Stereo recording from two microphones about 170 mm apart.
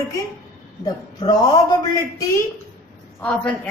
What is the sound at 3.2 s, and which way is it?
Speech, 5° left (ahead or behind).